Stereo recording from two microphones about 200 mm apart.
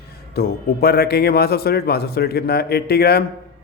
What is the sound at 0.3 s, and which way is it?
A man's voice, 50° left (ahead or behind).